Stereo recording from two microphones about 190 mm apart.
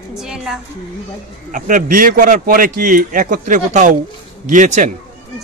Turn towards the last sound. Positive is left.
turn(degrees=-40)  # may be behind; listen again after turning